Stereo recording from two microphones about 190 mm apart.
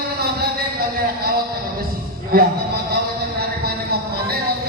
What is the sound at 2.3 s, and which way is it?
Speech, 50° right (ahead or behind).